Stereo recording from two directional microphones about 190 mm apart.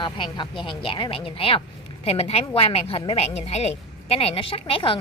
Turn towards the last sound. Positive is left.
turn(degrees=30)  # may be behind; listen again after turning